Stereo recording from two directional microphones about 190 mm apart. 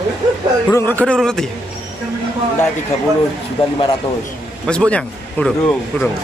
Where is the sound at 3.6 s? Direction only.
30° left (ahead or behind).